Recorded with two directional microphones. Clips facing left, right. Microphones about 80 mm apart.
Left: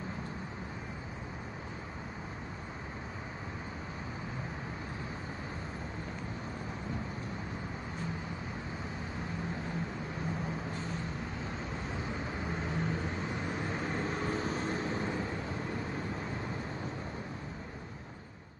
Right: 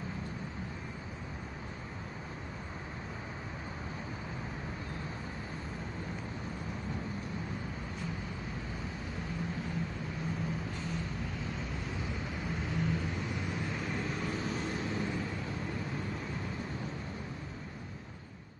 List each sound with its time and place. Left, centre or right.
12.0 s vehicle: left